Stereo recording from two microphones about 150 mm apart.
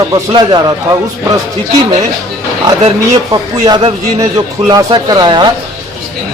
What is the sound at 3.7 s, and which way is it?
A man's voice, 30° right (ahead or behind).